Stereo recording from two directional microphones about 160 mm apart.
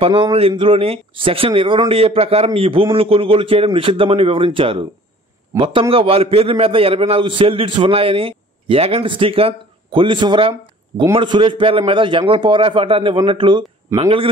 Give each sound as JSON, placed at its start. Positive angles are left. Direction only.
{"t": 0.0, "sound": "a man's voice", "side_deg": -35}